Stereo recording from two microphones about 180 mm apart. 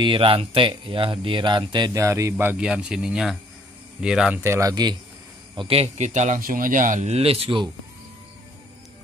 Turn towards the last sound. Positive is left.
turn(degrees=-30)  # may be behind; listen again after turning